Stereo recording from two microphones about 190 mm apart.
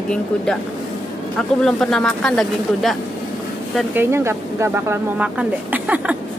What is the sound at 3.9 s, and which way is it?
Speech, 15° right (ahead or behind).